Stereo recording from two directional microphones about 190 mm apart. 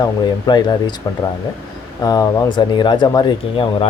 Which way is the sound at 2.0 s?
20° left (ahead or behind).